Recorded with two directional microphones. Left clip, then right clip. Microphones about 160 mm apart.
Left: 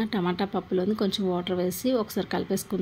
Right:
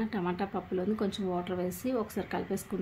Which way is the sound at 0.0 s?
25° left (ahead or behind).